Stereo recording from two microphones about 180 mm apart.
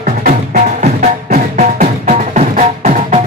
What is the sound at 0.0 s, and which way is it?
Music, 45° right (ahead or behind).